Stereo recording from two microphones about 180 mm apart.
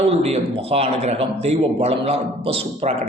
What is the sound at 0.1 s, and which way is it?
A man's voice, 35° right (ahead or behind).